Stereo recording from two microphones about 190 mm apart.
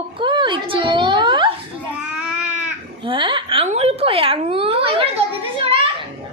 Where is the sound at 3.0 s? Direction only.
25° right (ahead or behind).